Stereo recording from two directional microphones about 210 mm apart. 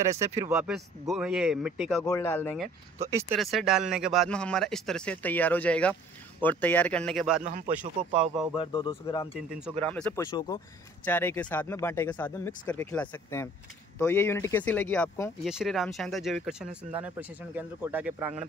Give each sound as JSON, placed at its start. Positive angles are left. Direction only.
{"t": 0.2, "sound": "speech", "side_deg": -15}
{"t": 0.5, "sound": "speech", "side_deg": 0}
{"t": 2.0, "sound": "speech", "side_deg": 10}
{"t": 7.4, "sound": "speech", "side_deg": -35}
{"t": 8.5, "sound": "speech", "side_deg": 25}
{"t": 9.8, "sound": "speech", "side_deg": 5}
{"t": 10.1, "sound": "speech", "side_deg": 15}
{"t": 15.4, "sound": "speech", "side_deg": 0}